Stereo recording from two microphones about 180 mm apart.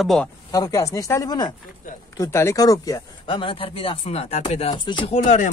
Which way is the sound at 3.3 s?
30° left (ahead or behind).